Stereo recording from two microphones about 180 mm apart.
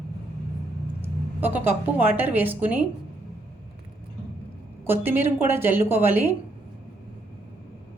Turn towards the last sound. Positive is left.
turn(degrees=-10)  # may be behind; listen again after turning